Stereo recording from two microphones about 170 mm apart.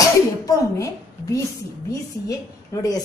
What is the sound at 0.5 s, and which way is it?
A woman's voice, 20° left (ahead or behind).